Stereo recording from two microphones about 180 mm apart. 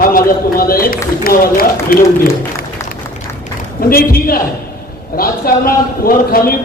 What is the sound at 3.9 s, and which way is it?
A man's voice, 55° left (ahead or behind).